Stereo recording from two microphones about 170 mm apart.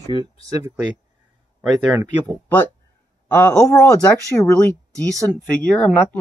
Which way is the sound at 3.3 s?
15° left (ahead or behind).